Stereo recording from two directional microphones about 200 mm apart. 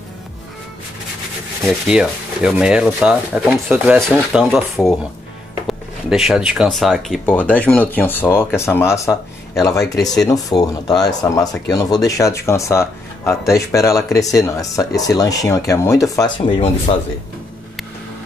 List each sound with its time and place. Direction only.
1.7 s rub: 5° right (ahead or behind)
3.7 s speech: 10° right (ahead or behind)
4.3 s rub: 5° right (ahead or behind)
5.7 s speech: centre (ahead or behind); by 16.9 s 30° left (ahead or behind)